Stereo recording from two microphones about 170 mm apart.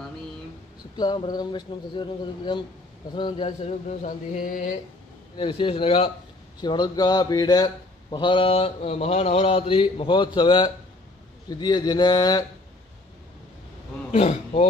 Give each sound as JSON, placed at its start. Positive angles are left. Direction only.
{"t": 0.9, "sound": "speech", "side_deg": 25}
{"t": 5.4, "sound": "speech", "side_deg": 30}
{"t": 14.1, "sound": "speech", "side_deg": 35}